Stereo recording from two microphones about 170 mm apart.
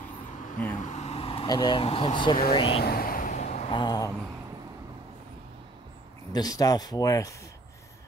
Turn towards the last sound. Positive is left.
turn(degrees=20)  # may be behind; listen again after turning